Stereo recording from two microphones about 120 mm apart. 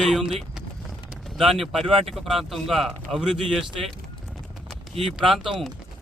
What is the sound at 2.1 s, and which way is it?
Speech, centre (ahead or behind).